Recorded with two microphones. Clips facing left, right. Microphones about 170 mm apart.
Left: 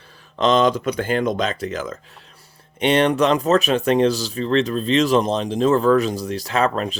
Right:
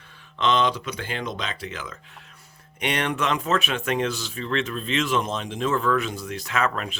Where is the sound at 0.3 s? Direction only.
40° left (ahead or behind).